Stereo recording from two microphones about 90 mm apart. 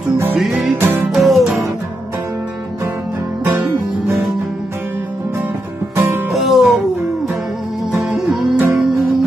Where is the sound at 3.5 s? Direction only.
25° right (ahead or behind).